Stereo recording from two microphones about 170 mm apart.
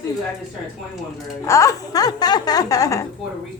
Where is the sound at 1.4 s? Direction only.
20° left (ahead or behind).